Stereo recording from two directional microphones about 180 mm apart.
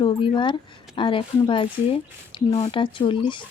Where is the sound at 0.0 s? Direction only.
25° left (ahead or behind).